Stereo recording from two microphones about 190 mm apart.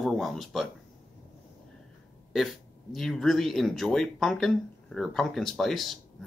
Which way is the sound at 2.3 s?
Centre (ahead or behind).